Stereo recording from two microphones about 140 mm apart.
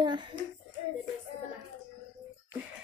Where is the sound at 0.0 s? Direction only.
30° right (ahead or behind).